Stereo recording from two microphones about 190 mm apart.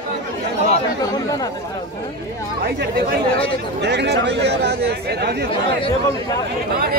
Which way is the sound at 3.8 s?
65° right (ahead or behind).